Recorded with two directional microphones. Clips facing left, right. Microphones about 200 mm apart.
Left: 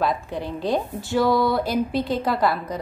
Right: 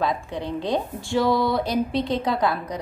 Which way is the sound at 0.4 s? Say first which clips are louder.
Left 1 dB; 20° right (ahead or behind).